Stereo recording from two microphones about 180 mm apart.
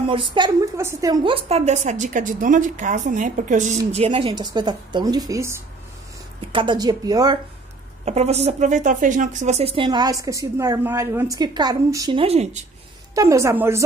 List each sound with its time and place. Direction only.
0.1 s a woman's voice: 25° right (ahead or behind)
4.3 s a woman's voice: 25° right (ahead or behind)
8.0 s a woman's voice: 40° right (ahead or behind); by 12.2 s 20° right (ahead or behind)
12.2 s speech: 35° right (ahead or behind)
13.1 s a woman's voice: 15° right (ahead or behind)